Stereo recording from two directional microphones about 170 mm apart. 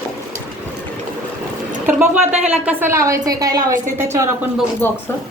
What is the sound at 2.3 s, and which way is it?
Speech, 40° right (ahead or behind).